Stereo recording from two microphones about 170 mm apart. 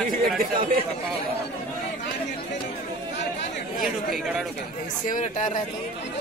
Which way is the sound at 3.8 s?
Centre (ahead or behind).